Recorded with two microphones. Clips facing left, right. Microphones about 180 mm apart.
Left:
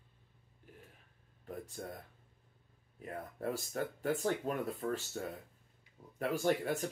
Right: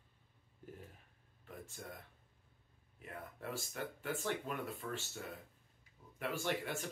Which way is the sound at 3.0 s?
40° left (ahead or behind).